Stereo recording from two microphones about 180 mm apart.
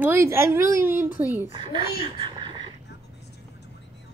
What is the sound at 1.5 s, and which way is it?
Speech, 30° right (ahead or behind).